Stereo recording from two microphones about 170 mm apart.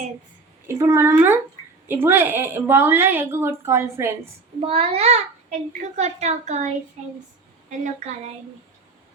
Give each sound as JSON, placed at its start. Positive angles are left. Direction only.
{"t": 0.7, "sound": "a woman's voice", "side_deg": -15}
{"t": 4.6, "sound": "a child's voice", "side_deg": -35}